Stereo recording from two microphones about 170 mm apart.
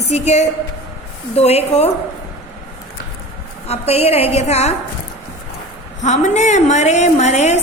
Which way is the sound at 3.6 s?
35° left (ahead or behind).